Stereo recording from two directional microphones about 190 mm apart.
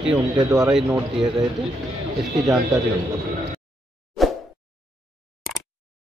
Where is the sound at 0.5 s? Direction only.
5° right (ahead or behind).